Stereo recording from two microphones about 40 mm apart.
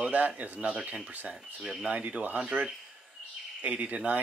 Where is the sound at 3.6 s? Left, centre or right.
Right.